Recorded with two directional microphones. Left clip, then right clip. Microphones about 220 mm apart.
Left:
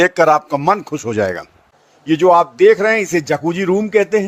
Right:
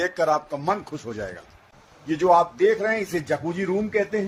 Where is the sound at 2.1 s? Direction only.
40° left (ahead or behind).